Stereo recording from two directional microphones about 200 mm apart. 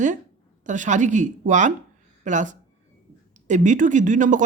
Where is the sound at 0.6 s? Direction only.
40° right (ahead or behind).